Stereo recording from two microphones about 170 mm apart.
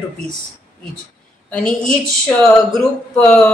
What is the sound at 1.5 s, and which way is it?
Speech, 5° left (ahead or behind).